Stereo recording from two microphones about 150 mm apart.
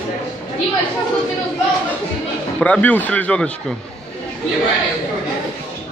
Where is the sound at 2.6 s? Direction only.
10° left (ahead or behind).